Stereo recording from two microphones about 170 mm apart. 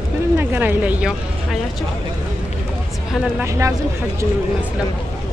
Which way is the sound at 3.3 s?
15° right (ahead or behind).